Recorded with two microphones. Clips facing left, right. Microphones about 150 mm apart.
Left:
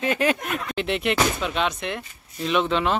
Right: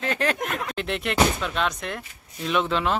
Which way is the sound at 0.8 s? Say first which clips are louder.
Left 1 dB; 5° left (ahead or behind).